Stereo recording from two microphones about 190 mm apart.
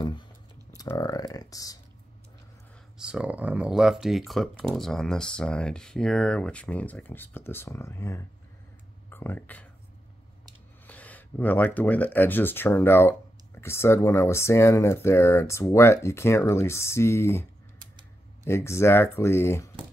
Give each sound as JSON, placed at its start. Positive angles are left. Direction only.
{"t": 0.7, "sound": "speech", "side_deg": 20}
{"t": 3.0, "sound": "speech", "side_deg": -5}
{"t": 10.9, "sound": "speech", "side_deg": 10}